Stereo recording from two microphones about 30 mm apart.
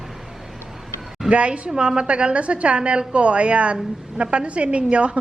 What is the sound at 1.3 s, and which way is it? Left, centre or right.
Speech, right.